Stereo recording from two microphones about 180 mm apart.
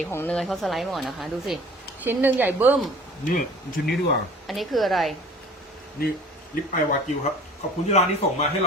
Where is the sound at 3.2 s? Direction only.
50° left (ahead or behind).